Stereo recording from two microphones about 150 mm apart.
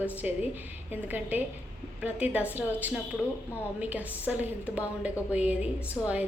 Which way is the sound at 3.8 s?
10° right (ahead or behind).